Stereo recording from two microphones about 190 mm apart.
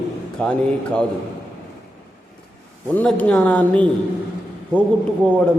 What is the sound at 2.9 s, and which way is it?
Speech, 10° left (ahead or behind).